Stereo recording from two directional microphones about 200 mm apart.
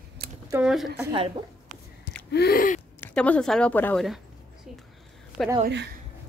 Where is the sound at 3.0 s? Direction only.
5° left (ahead or behind).